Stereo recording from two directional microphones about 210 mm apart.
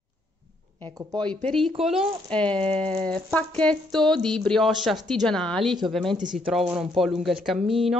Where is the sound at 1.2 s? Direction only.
5° left (ahead or behind).